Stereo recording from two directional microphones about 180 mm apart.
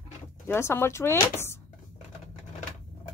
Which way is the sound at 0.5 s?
15° left (ahead or behind).